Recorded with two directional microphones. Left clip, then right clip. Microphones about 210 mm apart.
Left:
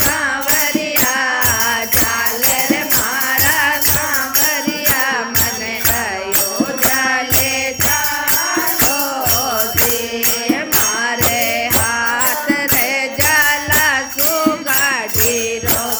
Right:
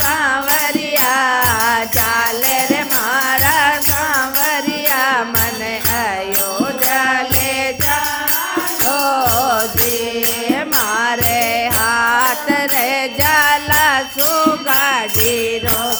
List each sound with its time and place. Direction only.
1.1 s music: 20° right (ahead or behind)
3.4 s music: 20° right (ahead or behind)
4.9 s music: 20° right (ahead or behind)
11.9 s music: 20° right (ahead or behind)